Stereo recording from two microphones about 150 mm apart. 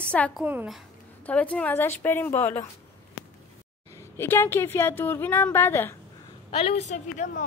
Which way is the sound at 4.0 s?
15° left (ahead or behind).